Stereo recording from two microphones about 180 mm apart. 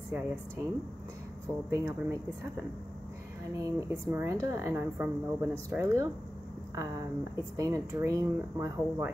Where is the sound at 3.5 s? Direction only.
15° right (ahead or behind).